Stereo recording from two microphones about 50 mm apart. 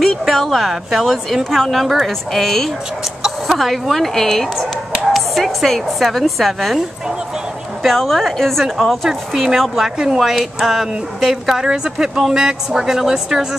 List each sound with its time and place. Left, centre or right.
0.0 s a woman's voice: centre
3.2 s a woman's voice: centre
7.8 s a woman's voice: centre
10.2 s speech: centre